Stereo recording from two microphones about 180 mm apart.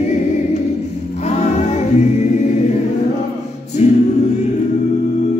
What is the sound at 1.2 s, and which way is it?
Music, 40° left (ahead or behind).